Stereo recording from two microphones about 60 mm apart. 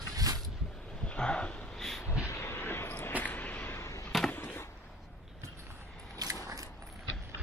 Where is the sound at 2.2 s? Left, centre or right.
Left.